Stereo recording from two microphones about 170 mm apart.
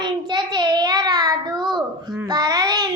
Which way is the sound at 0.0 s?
25° right (ahead or behind).